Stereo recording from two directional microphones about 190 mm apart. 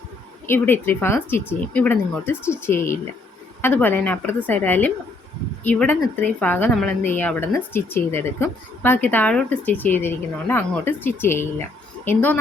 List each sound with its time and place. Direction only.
0.4 s a woman's voice: 10° left (ahead or behind)